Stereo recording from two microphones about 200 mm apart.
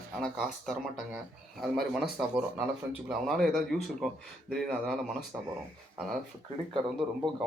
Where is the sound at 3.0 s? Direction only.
Centre (ahead or behind).